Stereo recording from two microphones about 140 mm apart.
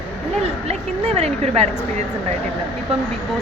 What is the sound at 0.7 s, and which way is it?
A woman's voice, 50° right (ahead or behind).